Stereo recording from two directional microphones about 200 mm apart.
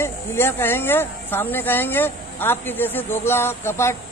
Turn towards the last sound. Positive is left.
turn(degrees=10)  # may be behind; listen again after turning